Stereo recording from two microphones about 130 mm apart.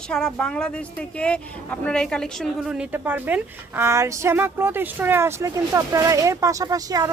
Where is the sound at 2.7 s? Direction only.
10° right (ahead or behind).